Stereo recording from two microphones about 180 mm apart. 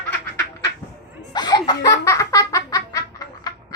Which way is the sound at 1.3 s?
25° left (ahead or behind).